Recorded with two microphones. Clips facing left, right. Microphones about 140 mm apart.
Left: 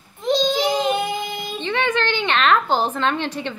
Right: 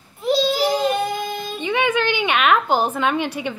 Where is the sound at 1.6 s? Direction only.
10° right (ahead or behind).